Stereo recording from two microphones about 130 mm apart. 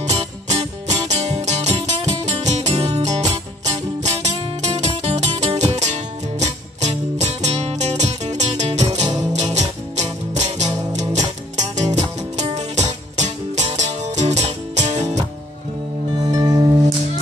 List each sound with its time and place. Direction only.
0.5 s music: 60° right (ahead or behind)
16.3 s music: 30° right (ahead or behind)